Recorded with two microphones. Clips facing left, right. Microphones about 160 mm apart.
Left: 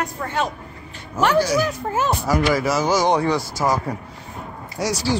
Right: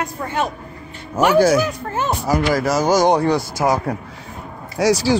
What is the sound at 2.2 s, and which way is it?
Speech, 40° right (ahead or behind).